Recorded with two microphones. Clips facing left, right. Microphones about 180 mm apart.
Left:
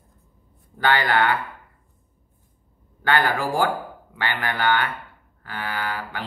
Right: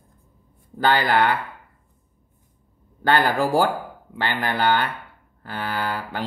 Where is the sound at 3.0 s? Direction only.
35° right (ahead or behind).